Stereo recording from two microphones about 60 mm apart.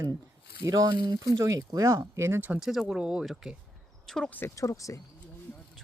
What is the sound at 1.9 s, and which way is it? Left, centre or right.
Speech, right.